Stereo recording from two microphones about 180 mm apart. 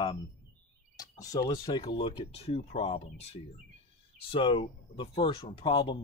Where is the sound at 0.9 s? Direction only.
20° left (ahead or behind).